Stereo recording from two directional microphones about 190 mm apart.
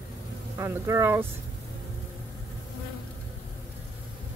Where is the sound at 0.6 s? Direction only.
15° right (ahead or behind).